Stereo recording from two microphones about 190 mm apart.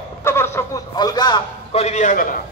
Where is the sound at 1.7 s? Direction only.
35° left (ahead or behind).